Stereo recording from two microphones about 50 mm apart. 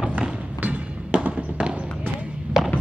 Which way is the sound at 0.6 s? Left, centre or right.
Right.